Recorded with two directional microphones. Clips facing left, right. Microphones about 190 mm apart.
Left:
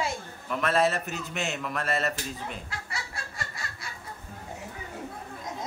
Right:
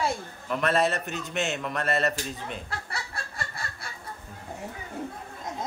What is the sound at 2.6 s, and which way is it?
Chicken, 55° right (ahead or behind).